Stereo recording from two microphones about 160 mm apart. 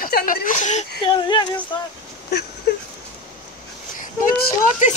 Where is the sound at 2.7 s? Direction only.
85° left.